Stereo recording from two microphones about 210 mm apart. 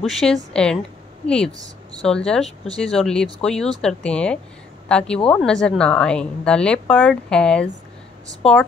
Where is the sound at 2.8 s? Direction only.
5° left (ahead or behind).